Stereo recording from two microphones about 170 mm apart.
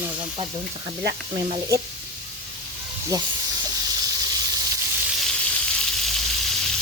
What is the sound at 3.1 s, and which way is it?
Speech, 20° right (ahead or behind).